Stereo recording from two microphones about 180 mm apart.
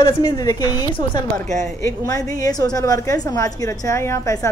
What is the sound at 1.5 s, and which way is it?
Speech, 40° right (ahead or behind).